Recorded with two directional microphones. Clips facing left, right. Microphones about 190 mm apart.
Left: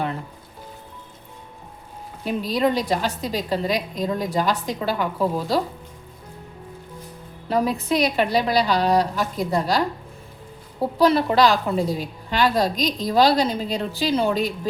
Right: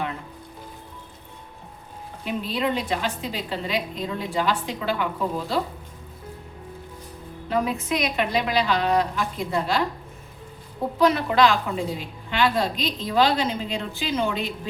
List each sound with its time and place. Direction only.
2.2 s a woman's voice: 40° left (ahead or behind)
7.5 s a woman's voice: 35° left (ahead or behind)
10.9 s a woman's voice: 35° left (ahead or behind)